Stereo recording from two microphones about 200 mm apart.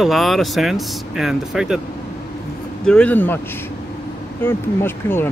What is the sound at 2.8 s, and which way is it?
Speech, 5° left (ahead or behind).